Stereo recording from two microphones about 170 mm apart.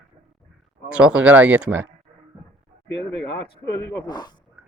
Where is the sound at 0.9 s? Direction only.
5° right (ahead or behind).